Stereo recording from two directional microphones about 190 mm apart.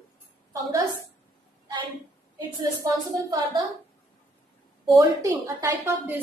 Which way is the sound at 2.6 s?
20° right (ahead or behind).